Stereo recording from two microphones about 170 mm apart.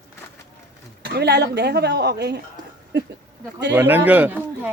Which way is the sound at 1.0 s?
90° right.